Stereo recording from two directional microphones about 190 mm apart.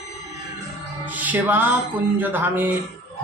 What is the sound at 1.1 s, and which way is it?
Speech, 10° right (ahead or behind).